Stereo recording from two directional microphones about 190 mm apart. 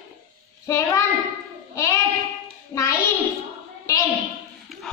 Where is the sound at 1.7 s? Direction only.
15° left (ahead or behind).